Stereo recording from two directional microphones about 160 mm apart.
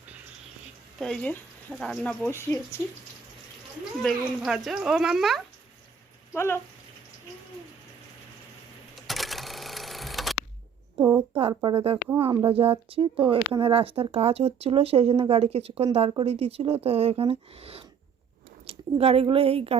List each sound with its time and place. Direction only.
0.9 s speech: 5° left (ahead or behind)
2.2 s speech: 15° left (ahead or behind)
4.0 s speech: centre (ahead or behind)
6.3 s speech: 15° left (ahead or behind)
9.0 s a sound: centre (ahead or behind)
10.9 s a sound: 25° right (ahead or behind)
11.3 s speech: 35° right (ahead or behind)
12.5 s a woman's voice: 35° right (ahead or behind)